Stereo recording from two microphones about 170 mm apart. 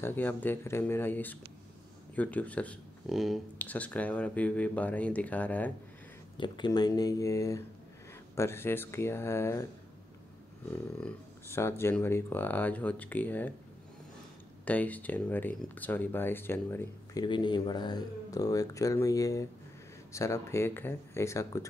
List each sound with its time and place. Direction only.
0.0 s speech: 10° left (ahead or behind)
6.3 s speech: 25° left (ahead or behind)
11.0 s speech: 10° left (ahead or behind)
14.6 s speech: 10° left (ahead or behind)
17.2 s speech: 25° left (ahead or behind)